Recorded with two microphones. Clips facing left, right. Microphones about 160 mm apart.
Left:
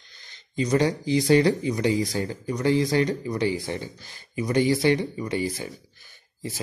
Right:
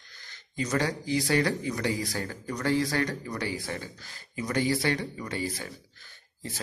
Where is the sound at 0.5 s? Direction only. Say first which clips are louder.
Left 6 dB; 20° left (ahead or behind).